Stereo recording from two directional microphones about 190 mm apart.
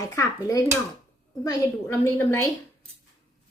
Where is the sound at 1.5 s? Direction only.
15° left (ahead or behind).